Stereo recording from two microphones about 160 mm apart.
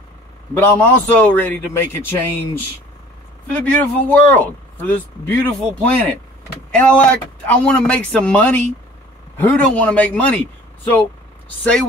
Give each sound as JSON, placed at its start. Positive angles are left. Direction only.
{"t": 0.6, "sound": "speech", "side_deg": 10}
{"t": 3.5, "sound": "speech", "side_deg": 10}